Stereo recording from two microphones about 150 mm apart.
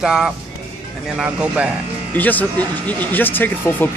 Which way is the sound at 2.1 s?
10° left (ahead or behind).